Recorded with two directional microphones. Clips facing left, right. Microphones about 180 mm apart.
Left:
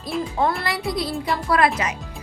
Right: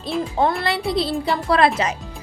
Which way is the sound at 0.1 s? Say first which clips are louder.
Right 2 dB; centre (ahead or behind).